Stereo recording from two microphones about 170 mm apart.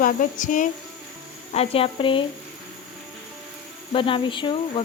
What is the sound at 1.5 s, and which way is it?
Speech, 35° left (ahead or behind).